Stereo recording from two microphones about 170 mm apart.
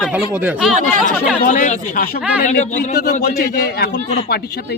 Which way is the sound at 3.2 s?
65° left (ahead or behind).